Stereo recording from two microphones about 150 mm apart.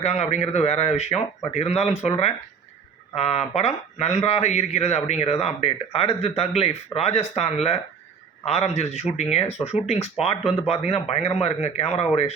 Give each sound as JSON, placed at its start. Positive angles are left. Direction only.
{"t": 0.0, "sound": "speech", "side_deg": 45}